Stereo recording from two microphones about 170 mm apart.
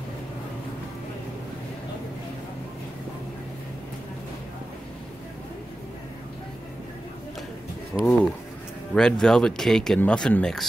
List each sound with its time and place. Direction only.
7.9 s speech: 5° left (ahead or behind)